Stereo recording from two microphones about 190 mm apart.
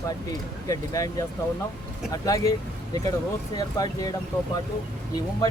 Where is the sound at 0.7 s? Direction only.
15° left (ahead or behind).